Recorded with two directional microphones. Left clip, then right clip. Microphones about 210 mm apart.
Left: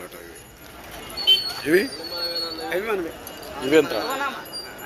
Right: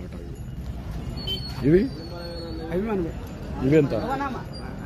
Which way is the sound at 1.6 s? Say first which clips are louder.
Even; 5° left (ahead or behind).